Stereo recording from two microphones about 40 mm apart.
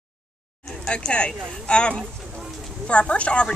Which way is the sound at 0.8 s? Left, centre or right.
Left.